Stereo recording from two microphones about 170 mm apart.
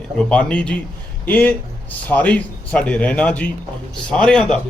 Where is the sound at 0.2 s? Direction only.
5° left (ahead or behind).